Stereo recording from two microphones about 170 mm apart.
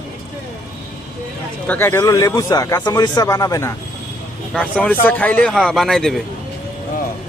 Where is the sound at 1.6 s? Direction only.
10° left (ahead or behind).